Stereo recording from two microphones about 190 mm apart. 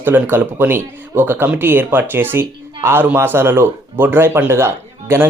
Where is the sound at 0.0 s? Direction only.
10° right (ahead or behind).